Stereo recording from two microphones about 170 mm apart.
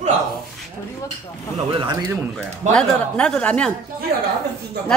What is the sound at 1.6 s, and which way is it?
Speech, 25° right (ahead or behind).